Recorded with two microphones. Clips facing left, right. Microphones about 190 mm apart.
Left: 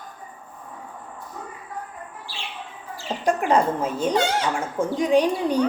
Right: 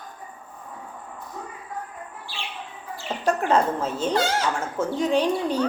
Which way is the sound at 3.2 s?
15° left (ahead or behind).